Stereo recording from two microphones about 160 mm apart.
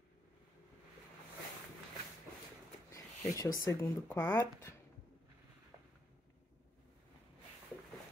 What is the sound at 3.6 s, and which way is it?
Speech, 20° left (ahead or behind).